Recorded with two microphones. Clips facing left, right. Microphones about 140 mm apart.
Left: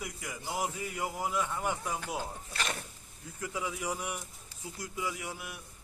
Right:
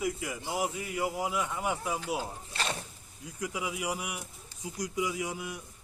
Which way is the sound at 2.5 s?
30° right (ahead or behind).